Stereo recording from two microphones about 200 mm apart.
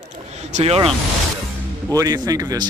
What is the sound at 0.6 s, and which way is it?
Speech, 30° right (ahead or behind).